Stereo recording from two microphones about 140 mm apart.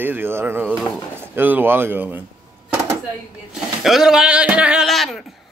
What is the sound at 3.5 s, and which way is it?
Speech, centre (ahead or behind).